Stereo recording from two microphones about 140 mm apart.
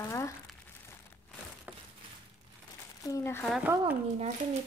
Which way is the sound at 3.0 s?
20° left (ahead or behind).